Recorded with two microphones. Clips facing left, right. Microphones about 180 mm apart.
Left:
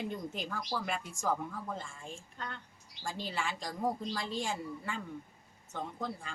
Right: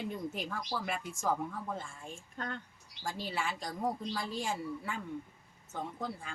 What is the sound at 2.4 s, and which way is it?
Speech, 45° right (ahead or behind).